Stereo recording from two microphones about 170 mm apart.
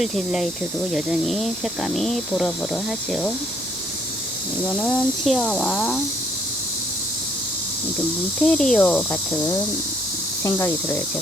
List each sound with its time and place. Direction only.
0.0 s speech: centre (ahead or behind)
4.8 s speech: 5° left (ahead or behind)
8.4 s speech: 5° left (ahead or behind)